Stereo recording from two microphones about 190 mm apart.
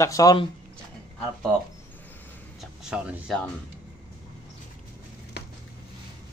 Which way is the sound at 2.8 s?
5° right (ahead or behind).